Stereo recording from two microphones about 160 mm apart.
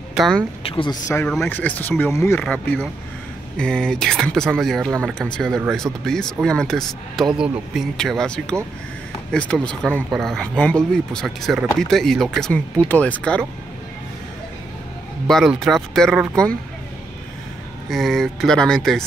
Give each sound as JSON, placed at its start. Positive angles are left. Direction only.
{"t": 0.1, "sound": "speech", "side_deg": 0}
{"t": 0.7, "sound": "speech", "side_deg": 35}
{"t": 1.0, "sound": "speech", "side_deg": 15}
{"t": 15.2, "sound": "speech", "side_deg": 0}
{"t": 17.8, "sound": "speech", "side_deg": 0}